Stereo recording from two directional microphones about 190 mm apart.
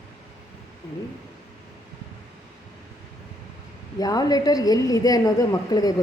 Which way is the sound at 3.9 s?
20° left (ahead or behind).